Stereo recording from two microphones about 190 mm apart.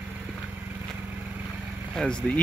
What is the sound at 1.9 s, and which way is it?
Speech, 5° left (ahead or behind).